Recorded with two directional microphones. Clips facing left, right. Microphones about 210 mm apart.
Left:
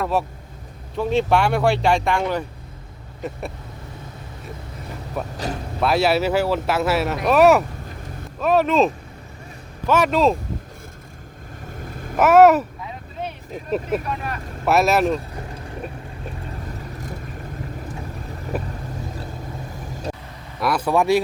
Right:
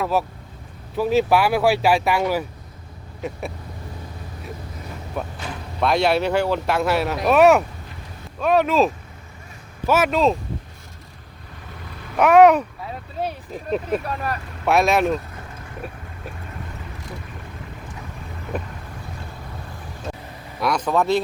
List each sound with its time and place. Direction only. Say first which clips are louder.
0.0 s speech: even; centre (ahead or behind)
5.2 s speech: left 3 dB; centre (ahead or behind)
11.8 s vehicle: left 6 dB; 45° left (ahead or behind)
12.1 s speech: even; 5° left (ahead or behind)
13.2 s vehicle: right 4 dB; 35° right (ahead or behind)
13.7 s speech: even; centre (ahead or behind)
14.1 s speech: right 1 dB; 40° right (ahead or behind)
14.6 s speech: left 1 dB; centre (ahead or behind)
18.5 s vehicle: left 1 dB; 5° left (ahead or behind)
20.6 s speech: left 1 dB; 5° left (ahead or behind)